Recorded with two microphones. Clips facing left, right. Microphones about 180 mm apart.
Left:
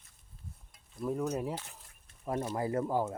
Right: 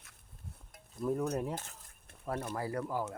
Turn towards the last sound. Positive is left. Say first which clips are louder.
# left 5 dB
turn(degrees=25)  # may be behind; listen again after turning